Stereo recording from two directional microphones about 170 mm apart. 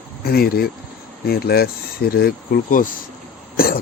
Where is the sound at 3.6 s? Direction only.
60° left (ahead or behind).